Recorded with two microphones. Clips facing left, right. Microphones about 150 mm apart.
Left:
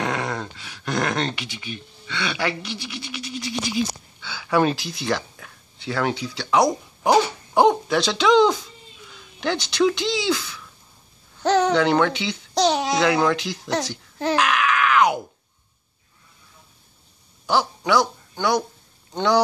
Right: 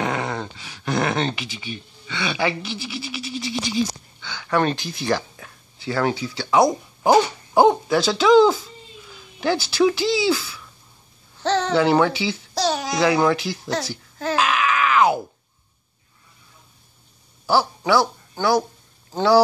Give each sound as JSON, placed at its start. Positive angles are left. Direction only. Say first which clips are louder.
{"t": 0.0, "sound": "speech", "louder": "right 1 dB", "side_deg": 0}
{"t": 11.4, "sound": "speech", "louder": "left 3 dB", "side_deg": 10}
{"t": 11.7, "sound": "speech", "louder": "right 1 dB", "side_deg": -5}
{"t": 12.5, "sound": "speech", "louder": "left 4 dB", "side_deg": 20}
{"t": 12.9, "sound": "speech", "louder": "right 1 dB", "side_deg": 0}
{"t": 14.3, "sound": "groan", "louder": "right 1 dB", "side_deg": -5}
{"t": 17.5, "sound": "speech", "louder": "right 2 dB", "side_deg": -5}